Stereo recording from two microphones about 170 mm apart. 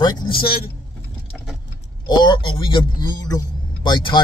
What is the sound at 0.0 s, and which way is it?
Speech, 25° left (ahead or behind).